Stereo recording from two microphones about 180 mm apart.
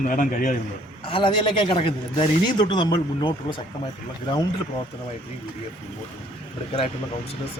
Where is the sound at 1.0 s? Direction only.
30° left (ahead or behind).